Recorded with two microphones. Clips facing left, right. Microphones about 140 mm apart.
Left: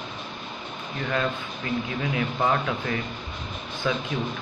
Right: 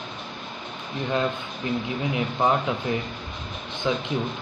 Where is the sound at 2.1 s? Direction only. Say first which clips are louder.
Right 2 dB; 20° right (ahead or behind).